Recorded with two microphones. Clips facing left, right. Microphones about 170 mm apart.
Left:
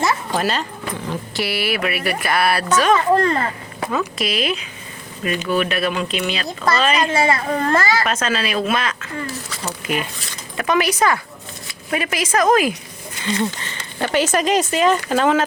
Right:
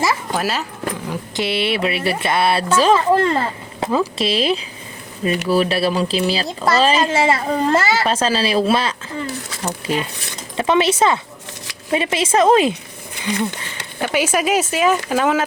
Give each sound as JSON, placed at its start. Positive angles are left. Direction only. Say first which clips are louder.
{"t": 0.0, "sound": "a sound", "louder": "even", "side_deg": -5}
{"t": 1.4, "sound": "a woman's voice", "louder": "right 3 dB", "side_deg": -25}
{"t": 14.0, "sound": "speech", "louder": "even", "side_deg": -10}